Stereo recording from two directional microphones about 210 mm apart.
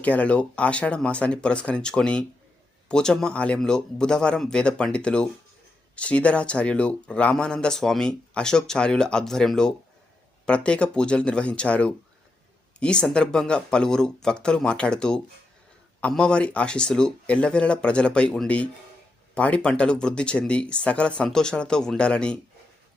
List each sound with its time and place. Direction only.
0.0 s speech: 5° left (ahead or behind)